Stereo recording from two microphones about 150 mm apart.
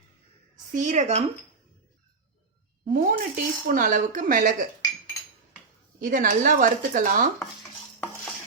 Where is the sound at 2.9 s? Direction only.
60° right (ahead or behind).